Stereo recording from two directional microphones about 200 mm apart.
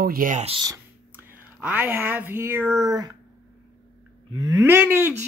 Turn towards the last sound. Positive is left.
turn(degrees=-10)  # may be behind; listen again after turning